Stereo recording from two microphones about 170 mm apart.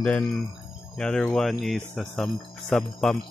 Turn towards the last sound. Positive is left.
turn(degrees=0)  # may be behind; listen again after turning